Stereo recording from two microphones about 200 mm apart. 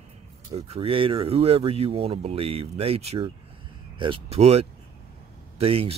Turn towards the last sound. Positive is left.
turn(degrees=-30)  # may be behind; listen again after turning